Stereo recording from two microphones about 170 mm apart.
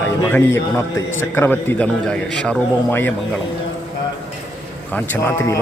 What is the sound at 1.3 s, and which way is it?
A man's voice, 10° left (ahead or behind).